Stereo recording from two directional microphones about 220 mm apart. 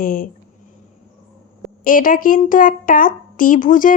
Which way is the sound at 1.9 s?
40° left (ahead or behind).